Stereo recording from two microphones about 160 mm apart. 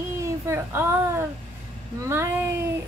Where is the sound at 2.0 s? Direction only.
15° right (ahead or behind).